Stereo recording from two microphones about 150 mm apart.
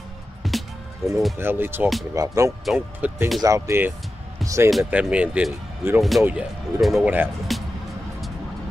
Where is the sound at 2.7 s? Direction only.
15° right (ahead or behind).